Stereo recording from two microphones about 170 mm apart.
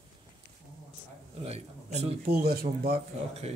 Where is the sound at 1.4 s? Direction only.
40° right (ahead or behind).